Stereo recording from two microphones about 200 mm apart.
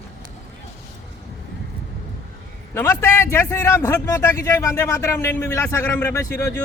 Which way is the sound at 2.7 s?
10° left (ahead or behind).